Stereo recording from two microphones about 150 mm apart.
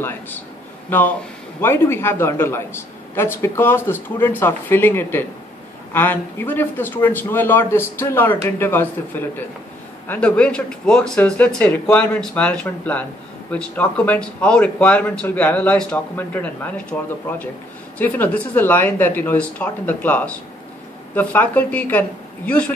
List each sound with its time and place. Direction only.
0.8 s speech: 10° left (ahead or behind)